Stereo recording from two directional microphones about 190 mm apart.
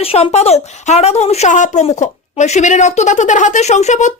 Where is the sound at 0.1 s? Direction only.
35° left (ahead or behind).